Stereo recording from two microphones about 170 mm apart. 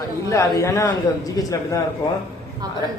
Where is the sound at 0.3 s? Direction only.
15° left (ahead or behind).